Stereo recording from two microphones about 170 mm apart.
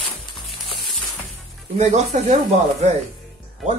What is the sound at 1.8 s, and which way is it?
Speech, 45° right (ahead or behind).